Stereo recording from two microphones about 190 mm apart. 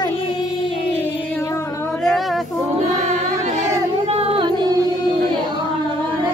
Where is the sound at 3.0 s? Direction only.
35° right (ahead or behind).